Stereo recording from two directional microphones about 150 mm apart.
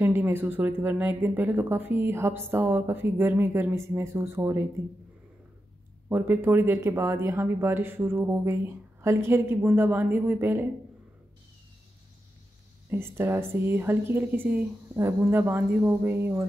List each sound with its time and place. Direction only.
0.0 s speech: 15° right (ahead or behind)
6.0 s speech: 15° right (ahead or behind)
12.9 s speech: 15° right (ahead or behind)